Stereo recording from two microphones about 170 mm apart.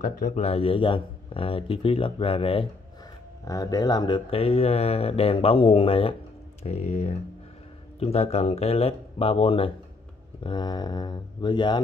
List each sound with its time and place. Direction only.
0.0 s speech: 55° left (ahead or behind)
0.4 s speech: 35° left (ahead or behind)
3.4 s speech: 20° left (ahead or behind)